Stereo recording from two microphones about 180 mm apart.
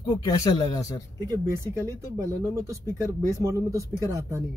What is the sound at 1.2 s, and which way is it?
Speech, 20° right (ahead or behind).